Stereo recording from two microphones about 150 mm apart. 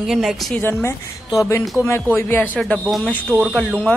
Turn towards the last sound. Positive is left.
turn(degrees=5)  # may be behind; listen again after turning